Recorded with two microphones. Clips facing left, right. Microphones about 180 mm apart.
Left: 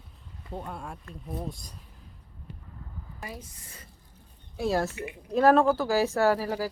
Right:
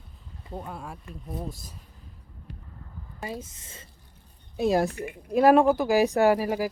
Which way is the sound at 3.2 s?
25° right (ahead or behind).